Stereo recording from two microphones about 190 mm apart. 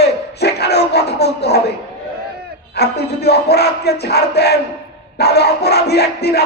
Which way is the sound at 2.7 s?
60° left (ahead or behind).